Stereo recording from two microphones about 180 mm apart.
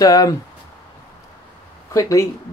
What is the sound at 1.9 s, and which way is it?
Speech, 15° left (ahead or behind).